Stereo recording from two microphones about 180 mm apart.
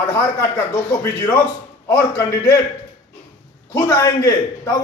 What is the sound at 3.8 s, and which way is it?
Speech, 20° left (ahead or behind).